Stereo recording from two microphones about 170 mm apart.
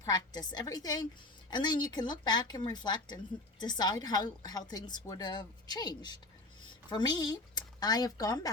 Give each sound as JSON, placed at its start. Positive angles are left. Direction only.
{"t": 0.0, "sound": "speech", "side_deg": 25}